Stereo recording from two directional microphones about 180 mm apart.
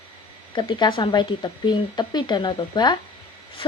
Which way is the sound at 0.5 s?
25° left (ahead or behind).